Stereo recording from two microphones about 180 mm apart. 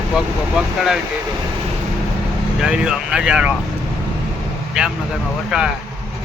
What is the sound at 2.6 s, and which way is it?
Speech, 5° right (ahead or behind).